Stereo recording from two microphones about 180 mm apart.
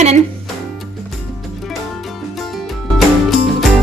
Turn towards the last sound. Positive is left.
turn(degrees=0)  # may be behind; listen again after turning